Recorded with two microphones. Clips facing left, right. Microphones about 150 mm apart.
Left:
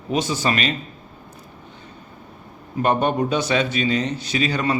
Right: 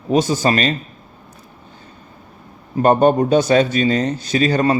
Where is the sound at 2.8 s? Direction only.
40° right (ahead or behind).